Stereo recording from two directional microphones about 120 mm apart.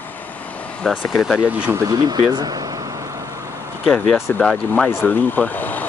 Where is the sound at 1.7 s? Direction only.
30° right (ahead or behind).